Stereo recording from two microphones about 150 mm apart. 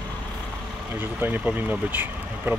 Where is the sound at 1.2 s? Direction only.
10° right (ahead or behind).